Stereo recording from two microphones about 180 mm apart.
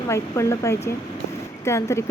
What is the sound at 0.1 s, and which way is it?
Speech, 15° left (ahead or behind).